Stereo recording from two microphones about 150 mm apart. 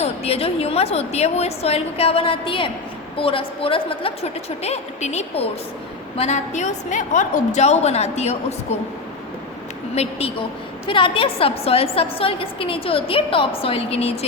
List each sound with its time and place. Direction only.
0.0 s a woman's voice: 45° left (ahead or behind)
9.9 s a woman's voice: 45° left (ahead or behind)